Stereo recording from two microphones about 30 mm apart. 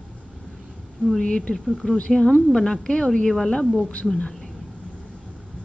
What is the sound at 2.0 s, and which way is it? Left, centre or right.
Speech, left.